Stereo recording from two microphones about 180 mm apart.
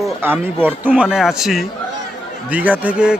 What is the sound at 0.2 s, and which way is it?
A man's voice, 10° right (ahead or behind).